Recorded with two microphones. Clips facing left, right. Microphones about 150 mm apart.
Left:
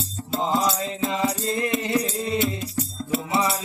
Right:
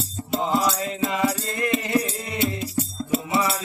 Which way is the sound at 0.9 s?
30° left (ahead or behind).